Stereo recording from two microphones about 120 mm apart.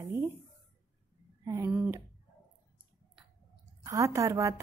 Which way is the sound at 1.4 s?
25° right (ahead or behind).